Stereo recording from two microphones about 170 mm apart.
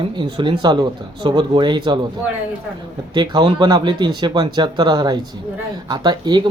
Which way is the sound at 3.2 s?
25° right (ahead or behind).